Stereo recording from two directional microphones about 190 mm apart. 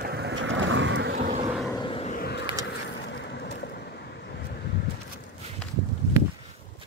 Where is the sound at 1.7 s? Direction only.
25° left (ahead or behind).